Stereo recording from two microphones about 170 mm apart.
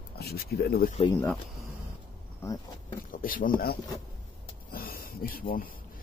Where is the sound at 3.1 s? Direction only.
55° left (ahead or behind).